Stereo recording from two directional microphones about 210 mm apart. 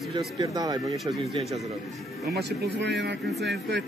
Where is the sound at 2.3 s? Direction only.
50° right (ahead or behind).